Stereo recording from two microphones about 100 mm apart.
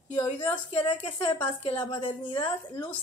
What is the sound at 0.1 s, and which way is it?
A woman's voice, 45° left (ahead or behind).